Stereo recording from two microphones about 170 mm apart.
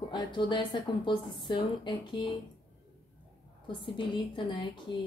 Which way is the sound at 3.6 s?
30° left (ahead or behind).